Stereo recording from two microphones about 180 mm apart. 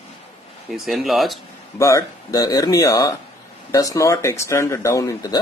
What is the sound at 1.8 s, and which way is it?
Speech, 15° left (ahead or behind).